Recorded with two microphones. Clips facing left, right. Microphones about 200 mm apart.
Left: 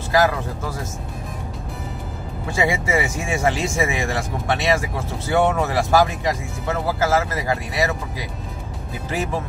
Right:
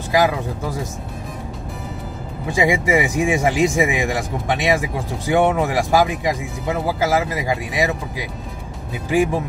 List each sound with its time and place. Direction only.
0.1 s speech: 15° right (ahead or behind)
2.5 s speech: 15° right (ahead or behind)